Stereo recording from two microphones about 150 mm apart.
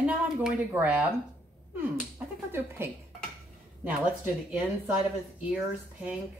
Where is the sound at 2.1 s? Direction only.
15° right (ahead or behind).